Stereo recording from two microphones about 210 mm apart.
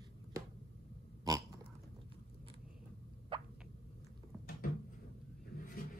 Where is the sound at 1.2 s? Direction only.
15° right (ahead or behind).